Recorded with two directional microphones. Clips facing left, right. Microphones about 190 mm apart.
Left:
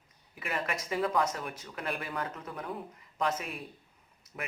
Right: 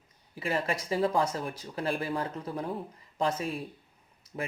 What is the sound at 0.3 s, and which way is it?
Speech, 30° right (ahead or behind).